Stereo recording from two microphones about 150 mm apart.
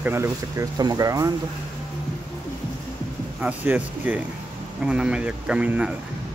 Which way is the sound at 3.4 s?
10° right (ahead or behind).